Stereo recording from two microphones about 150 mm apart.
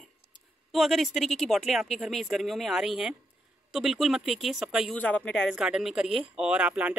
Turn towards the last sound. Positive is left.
turn(degrees=-10)  # may be behind; listen again after turning